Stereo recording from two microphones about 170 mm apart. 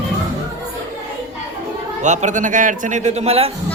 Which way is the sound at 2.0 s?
45° right (ahead or behind).